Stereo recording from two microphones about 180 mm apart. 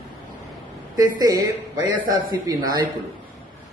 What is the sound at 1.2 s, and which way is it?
A man's voice, 20° right (ahead or behind).